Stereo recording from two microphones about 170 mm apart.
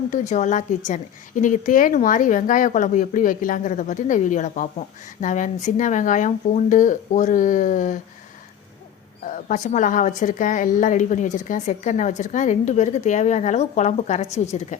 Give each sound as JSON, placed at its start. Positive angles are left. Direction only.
{"t": 0.1, "sound": "speech", "side_deg": 45}
{"t": 9.2, "sound": "speech", "side_deg": 50}